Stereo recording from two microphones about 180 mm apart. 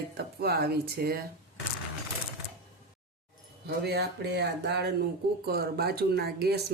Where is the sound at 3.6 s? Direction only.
65° right (ahead or behind).